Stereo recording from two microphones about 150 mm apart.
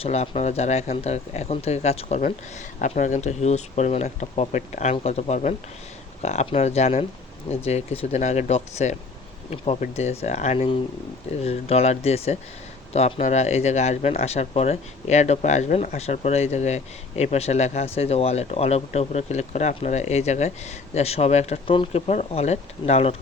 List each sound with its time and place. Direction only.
0.0 s speech: 45° left (ahead or behind)